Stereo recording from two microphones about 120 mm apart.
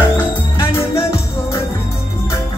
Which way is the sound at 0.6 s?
20° left (ahead or behind).